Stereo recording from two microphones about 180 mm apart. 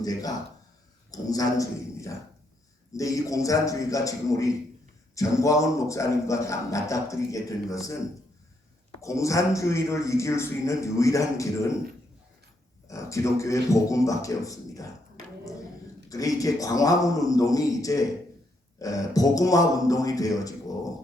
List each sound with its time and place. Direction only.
0.0 s a man's voice: 20° left (ahead or behind)
9.0 s a man's voice: 15° left (ahead or behind)
12.9 s a man's voice: 15° left (ahead or behind)
16.0 s a man's voice: 20° left (ahead or behind)